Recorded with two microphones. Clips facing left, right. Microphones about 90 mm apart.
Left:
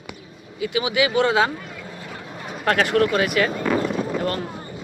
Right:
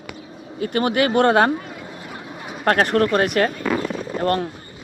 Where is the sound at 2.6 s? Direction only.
45° right (ahead or behind); by 4.5 s 60° right (ahead or behind).